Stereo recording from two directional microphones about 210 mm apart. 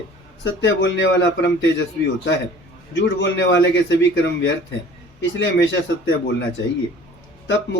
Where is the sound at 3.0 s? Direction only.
60° left (ahead or behind).